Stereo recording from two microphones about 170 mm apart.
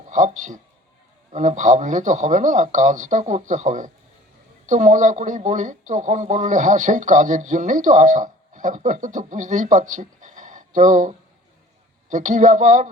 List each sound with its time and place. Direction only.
0.1 s speech: 45° right (ahead or behind)
12.1 s speech: 45° right (ahead or behind)